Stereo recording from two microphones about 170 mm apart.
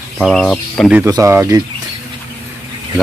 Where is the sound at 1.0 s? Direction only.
20° right (ahead or behind).